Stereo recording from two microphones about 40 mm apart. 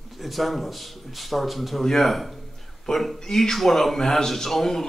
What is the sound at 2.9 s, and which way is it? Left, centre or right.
Speech, centre.